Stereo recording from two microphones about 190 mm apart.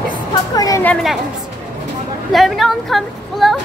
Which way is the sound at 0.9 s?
Centre (ahead or behind).